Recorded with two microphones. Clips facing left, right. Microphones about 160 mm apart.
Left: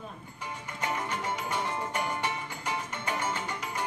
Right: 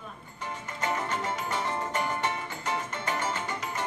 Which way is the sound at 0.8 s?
10° left (ahead or behind).